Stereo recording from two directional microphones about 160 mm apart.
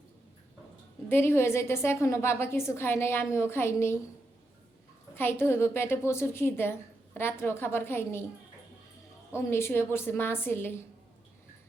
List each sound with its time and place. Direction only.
1.0 s a woman's voice: 15° left (ahead or behind)
5.1 s a woman's voice: 15° left (ahead or behind)
9.3 s a woman's voice: 15° left (ahead or behind)